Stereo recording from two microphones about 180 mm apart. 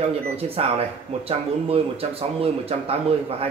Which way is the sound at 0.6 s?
35° right (ahead or behind).